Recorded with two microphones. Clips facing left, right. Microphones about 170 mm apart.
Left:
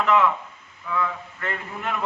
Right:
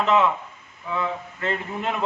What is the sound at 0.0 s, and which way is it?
A man's voice, 20° right (ahead or behind).